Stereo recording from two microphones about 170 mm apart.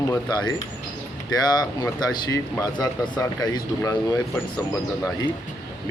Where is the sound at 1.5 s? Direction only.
25° left (ahead or behind).